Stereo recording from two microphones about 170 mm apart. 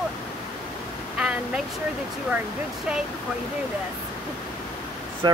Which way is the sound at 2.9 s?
5° right (ahead or behind).